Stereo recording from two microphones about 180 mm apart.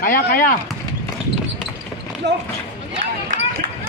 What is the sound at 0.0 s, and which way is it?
Speech, 55° left (ahead or behind).